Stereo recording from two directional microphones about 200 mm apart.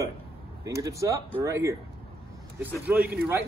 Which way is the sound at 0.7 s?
15° right (ahead or behind).